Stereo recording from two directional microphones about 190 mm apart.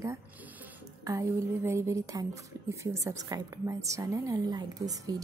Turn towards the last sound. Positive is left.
turn(degrees=-20)  # may be behind; listen again after turning